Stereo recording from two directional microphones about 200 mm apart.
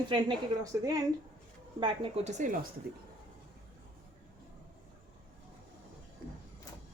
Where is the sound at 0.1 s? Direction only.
20° right (ahead or behind).